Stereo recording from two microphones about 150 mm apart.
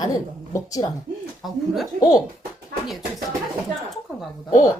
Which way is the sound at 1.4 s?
Centre (ahead or behind).